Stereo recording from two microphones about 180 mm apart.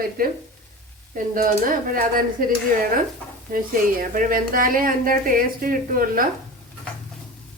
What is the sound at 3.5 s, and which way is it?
Speech, 50° right (ahead or behind).